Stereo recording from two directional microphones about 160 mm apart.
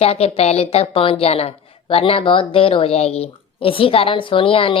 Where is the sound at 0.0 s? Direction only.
40° left (ahead or behind).